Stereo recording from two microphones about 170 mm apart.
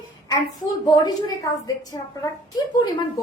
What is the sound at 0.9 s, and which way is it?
A woman's voice, 20° left (ahead or behind).